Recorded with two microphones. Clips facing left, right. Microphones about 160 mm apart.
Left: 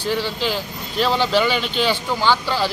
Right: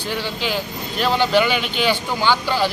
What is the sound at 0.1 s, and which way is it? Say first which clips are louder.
Speech: left 1 dB; centre (ahead or behind).